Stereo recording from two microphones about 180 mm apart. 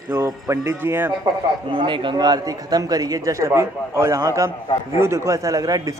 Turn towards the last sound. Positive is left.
turn(degrees=-20)  # may be behind; listen again after turning